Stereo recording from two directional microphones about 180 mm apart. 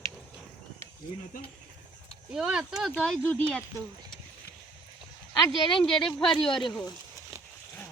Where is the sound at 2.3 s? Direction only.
5° right (ahead or behind).